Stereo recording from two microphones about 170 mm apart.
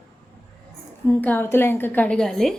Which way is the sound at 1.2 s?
10° left (ahead or behind).